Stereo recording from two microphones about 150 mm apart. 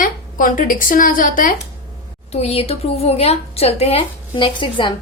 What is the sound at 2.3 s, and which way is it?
A woman's voice, 45° left (ahead or behind).